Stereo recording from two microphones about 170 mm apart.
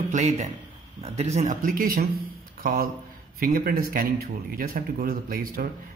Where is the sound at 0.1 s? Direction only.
40° right (ahead or behind).